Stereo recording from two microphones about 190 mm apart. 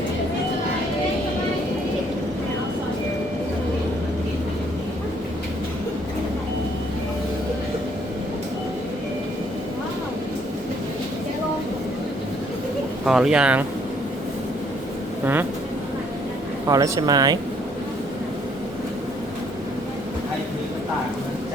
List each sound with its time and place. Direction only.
13.1 s speech: 5° right (ahead or behind)
16.6 s speech: 15° right (ahead or behind)